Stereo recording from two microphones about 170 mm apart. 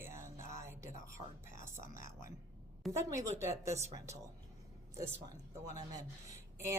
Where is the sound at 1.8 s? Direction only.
50° left (ahead or behind).